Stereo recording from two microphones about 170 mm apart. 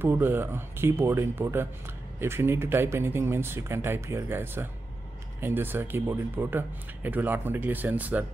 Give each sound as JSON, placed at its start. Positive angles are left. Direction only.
{"t": 0.0, "sound": "speech", "side_deg": -10}